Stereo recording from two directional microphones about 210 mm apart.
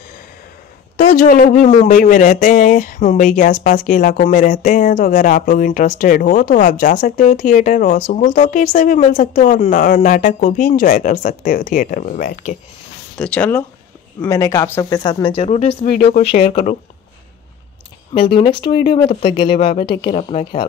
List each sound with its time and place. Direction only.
0.9 s speech: 40° left (ahead or behind)
13.2 s speech: 5° left (ahead or behind); by 16.7 s 35° left (ahead or behind)
18.1 s speech: 25° left (ahead or behind)